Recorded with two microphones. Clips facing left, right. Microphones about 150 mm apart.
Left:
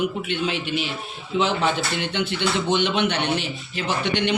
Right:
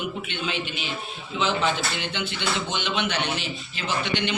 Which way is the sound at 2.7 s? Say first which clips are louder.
Left 5 dB; 60° left (ahead or behind).